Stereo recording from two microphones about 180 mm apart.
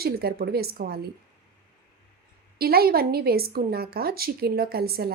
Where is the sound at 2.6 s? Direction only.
60° right (ahead or behind).